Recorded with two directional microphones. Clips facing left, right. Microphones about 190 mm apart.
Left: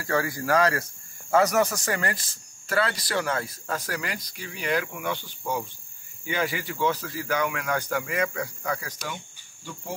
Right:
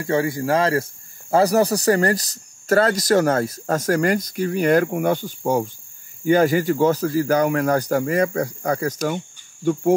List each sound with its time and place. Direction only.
0.0 s speech: 25° right (ahead or behind); by 9.2 s 45° right (ahead or behind)